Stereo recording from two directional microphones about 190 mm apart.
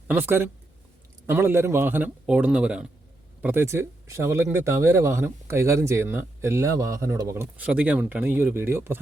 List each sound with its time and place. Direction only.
0.1 s speech: 10° right (ahead or behind)